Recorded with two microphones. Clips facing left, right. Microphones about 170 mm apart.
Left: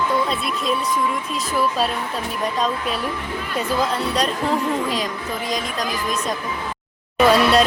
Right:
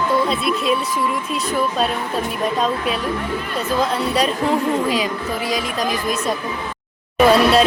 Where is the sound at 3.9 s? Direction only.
5° right (ahead or behind).